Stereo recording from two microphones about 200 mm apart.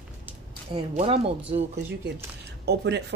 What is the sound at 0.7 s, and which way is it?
Speech, 30° right (ahead or behind).